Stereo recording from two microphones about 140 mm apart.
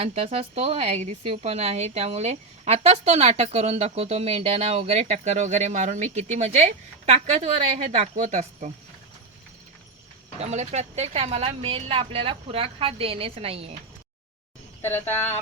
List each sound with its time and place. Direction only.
0.0 s a woman's voice: 45° right (ahead or behind)
10.4 s a woman's voice: 50° right (ahead or behind)
14.8 s speech: 15° left (ahead or behind)